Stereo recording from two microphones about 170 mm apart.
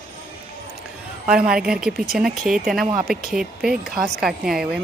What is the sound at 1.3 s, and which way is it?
Speech, 5° right (ahead or behind).